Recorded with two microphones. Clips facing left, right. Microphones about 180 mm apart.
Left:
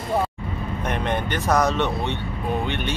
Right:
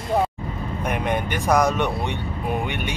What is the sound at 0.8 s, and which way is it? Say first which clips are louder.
Speech: right 1 dB; 10° right (ahead or behind).